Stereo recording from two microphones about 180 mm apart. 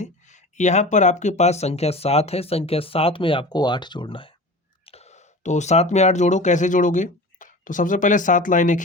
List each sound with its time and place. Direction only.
0.0 s speech: 40° left (ahead or behind)